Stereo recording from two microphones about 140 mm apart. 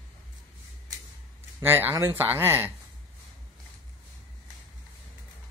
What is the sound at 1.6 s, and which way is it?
Speech, 15° right (ahead or behind).